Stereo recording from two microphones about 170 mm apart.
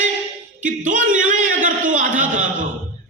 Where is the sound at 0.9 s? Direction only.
50° right (ahead or behind).